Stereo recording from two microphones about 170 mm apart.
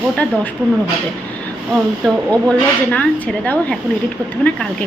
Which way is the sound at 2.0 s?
5° left (ahead or behind).